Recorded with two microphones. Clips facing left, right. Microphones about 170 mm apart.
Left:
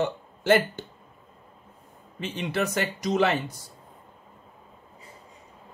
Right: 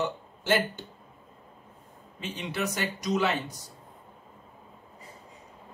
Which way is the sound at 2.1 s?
55° left (ahead or behind).